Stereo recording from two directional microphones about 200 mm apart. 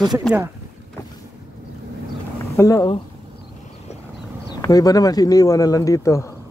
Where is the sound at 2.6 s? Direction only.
15° left (ahead or behind).